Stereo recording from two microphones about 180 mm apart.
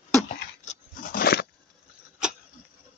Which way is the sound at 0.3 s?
45° left (ahead or behind).